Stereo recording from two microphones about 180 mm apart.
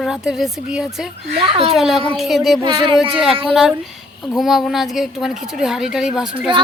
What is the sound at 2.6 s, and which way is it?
Speech, 25° right (ahead or behind).